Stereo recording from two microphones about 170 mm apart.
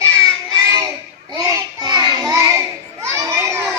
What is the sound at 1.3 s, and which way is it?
Child singing, 20° right (ahead or behind).